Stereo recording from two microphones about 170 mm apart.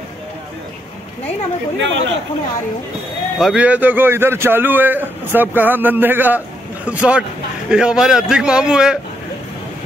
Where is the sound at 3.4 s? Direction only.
5° right (ahead or behind).